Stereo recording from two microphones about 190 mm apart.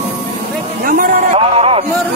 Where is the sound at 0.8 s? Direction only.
50° right (ahead or behind).